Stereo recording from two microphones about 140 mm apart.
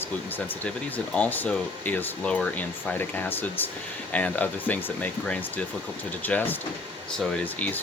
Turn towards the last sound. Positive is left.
turn(degrees=10)  # may be behind; listen again after turning